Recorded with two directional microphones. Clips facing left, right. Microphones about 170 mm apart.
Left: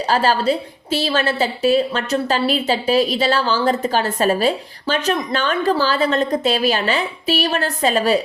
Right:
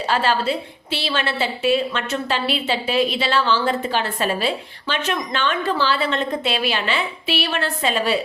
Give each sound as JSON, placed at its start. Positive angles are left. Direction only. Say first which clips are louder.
{"t": 0.1, "sound": "a woman's voice", "louder": "left 3 dB", "side_deg": 40}